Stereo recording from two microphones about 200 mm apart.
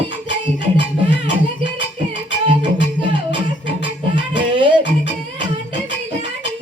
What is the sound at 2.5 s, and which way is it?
Music, 25° right (ahead or behind).